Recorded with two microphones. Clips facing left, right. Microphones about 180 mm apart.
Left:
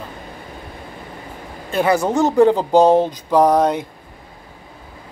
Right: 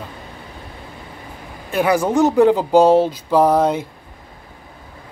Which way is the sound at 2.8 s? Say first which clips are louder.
Even; 15° left (ahead or behind).